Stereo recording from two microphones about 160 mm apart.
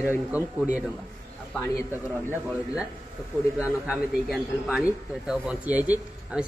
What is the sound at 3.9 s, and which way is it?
Speech, 5° right (ahead or behind).